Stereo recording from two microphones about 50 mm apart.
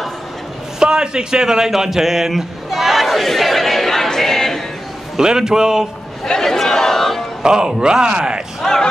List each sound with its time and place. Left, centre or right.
0.7 s a sound: centre
5.1 s speech: centre
6.2 s crowd: centre
7.4 s speech: centre